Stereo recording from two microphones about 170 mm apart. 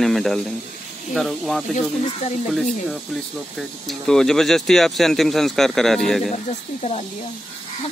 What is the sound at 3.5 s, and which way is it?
Speech, centre (ahead or behind).